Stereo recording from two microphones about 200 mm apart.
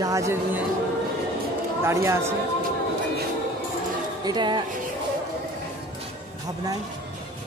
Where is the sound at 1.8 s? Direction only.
15° right (ahead or behind).